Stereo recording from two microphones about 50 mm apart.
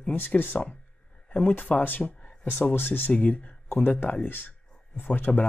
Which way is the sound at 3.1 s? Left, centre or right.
Left.